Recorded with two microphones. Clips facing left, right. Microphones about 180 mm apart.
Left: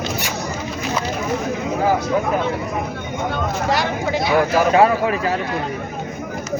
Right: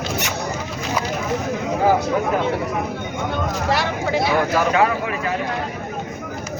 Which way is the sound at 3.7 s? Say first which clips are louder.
Left 1 dB; centre (ahead or behind).